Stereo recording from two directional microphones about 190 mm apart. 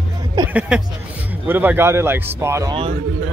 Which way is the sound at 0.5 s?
5° right (ahead or behind).